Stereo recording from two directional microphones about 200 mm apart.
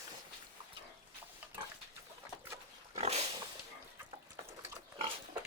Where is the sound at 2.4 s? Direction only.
15° right (ahead or behind).